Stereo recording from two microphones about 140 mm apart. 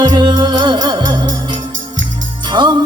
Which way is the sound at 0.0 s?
30° right (ahead or behind).